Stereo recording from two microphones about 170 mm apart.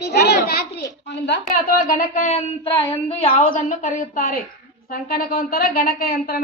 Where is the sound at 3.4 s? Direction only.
50° left (ahead or behind).